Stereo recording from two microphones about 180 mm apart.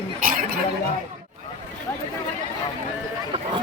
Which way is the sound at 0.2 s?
50° right (ahead or behind).